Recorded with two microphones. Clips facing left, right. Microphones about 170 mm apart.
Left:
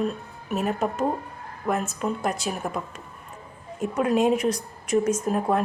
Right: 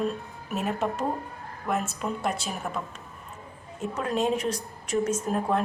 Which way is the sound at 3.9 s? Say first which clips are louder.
Left 5 dB; 10° left (ahead or behind).